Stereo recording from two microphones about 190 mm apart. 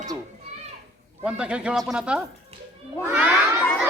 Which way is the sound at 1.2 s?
5° right (ahead or behind).